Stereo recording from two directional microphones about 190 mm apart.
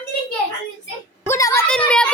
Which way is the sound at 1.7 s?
5° left (ahead or behind).